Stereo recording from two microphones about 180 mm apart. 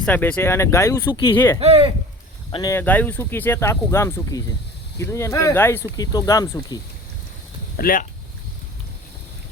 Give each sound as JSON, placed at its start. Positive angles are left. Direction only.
{"t": 0.0, "sound": "speech", "side_deg": 10}
{"t": 1.5, "sound": "speech", "side_deg": -30}
{"t": 2.5, "sound": "speech", "side_deg": 20}
{"t": 7.8, "sound": "speech", "side_deg": 55}